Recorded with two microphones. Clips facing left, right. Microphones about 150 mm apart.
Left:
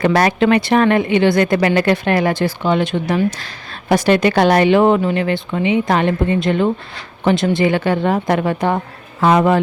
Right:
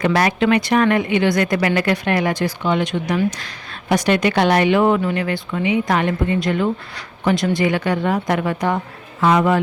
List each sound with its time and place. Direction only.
0.0 s speech: 35° left (ahead or behind)